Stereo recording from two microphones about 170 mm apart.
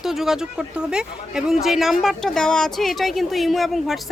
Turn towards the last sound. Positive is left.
turn(degrees=0)  # may be behind; listen again after turning